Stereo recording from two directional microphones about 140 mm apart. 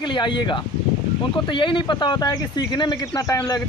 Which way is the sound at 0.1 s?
35° left (ahead or behind).